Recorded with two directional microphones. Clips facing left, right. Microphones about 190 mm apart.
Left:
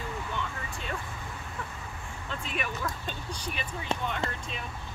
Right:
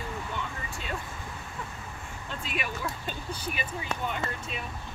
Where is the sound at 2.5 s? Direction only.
10° right (ahead or behind).